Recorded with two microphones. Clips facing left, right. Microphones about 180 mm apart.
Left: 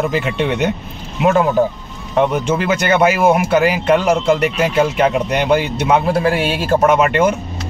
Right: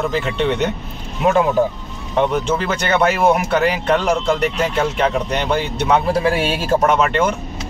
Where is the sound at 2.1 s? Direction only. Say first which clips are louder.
Left 2 dB; 10° left (ahead or behind).